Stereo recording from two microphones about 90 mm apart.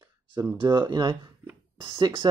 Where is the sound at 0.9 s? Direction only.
50° right (ahead or behind).